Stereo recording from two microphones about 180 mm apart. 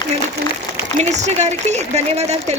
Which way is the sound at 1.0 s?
40° right (ahead or behind).